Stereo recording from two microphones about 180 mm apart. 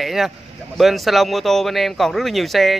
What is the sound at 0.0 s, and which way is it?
Speech, centre (ahead or behind).